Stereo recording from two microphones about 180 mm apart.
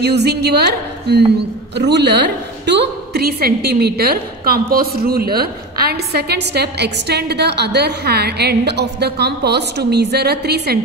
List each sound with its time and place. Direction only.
0.0 s a woman's voice: 70° right (ahead or behind)